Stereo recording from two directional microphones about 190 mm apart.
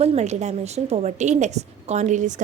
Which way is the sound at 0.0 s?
35° right (ahead or behind).